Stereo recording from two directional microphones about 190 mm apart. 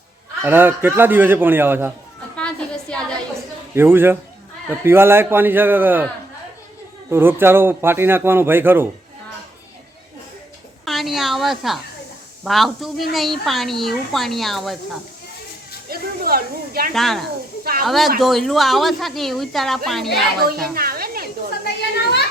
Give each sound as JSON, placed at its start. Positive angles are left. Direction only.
{"t": 0.4, "sound": "a man's voice", "side_deg": -10}
{"t": 2.3, "sound": "a sound", "side_deg": 5}
{"t": 3.8, "sound": "a man's voice", "side_deg": -10}
{"t": 7.1, "sound": "a man's voice", "side_deg": -10}
{"t": 10.8, "sound": "a sound", "side_deg": 0}
{"t": 12.5, "sound": "a woman's voice", "side_deg": 0}
{"t": 15.9, "sound": "snake", "side_deg": -55}
{"t": 16.9, "sound": "a woman's voice", "side_deg": 0}
{"t": 17.6, "sound": "speech", "side_deg": -50}
{"t": 17.8, "sound": "a woman's voice", "side_deg": 0}
{"t": 20.4, "sound": "a woman's voice", "side_deg": -55}
{"t": 20.7, "sound": "a sound", "side_deg": -50}
{"t": 21.7, "sound": "a sound", "side_deg": 60}